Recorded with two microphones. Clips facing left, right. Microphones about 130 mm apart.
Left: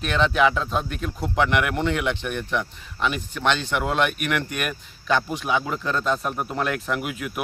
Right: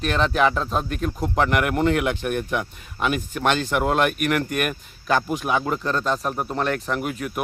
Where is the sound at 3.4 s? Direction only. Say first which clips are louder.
Right 1 dB; 45° right (ahead or behind).